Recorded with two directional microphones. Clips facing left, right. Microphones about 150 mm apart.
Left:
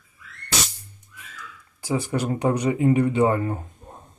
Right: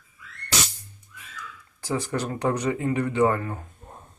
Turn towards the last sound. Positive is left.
turn(degrees=20)  # may be behind; listen again after turning